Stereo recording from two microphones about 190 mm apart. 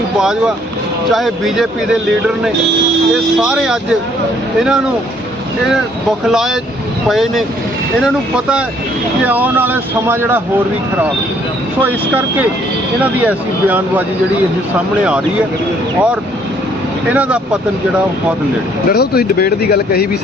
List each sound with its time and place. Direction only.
0.2 s a man's voice: 5° right (ahead or behind)
6.2 s a man's voice: centre (ahead or behind)
11.8 s speech: 10° right (ahead or behind)
17.1 s speech: 5° right (ahead or behind)
18.9 s speech: 50° left (ahead or behind)